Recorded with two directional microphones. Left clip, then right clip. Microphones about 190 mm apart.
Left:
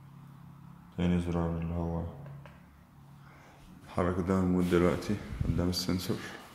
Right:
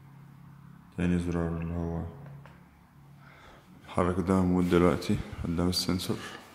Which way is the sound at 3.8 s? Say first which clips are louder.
Right 3 dB; 30° right (ahead or behind).